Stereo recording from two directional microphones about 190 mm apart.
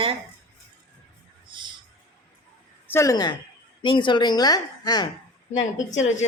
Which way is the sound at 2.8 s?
15° left (ahead or behind).